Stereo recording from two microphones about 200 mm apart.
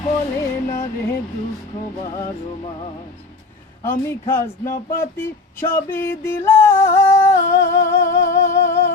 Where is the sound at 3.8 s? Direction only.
15° left (ahead or behind).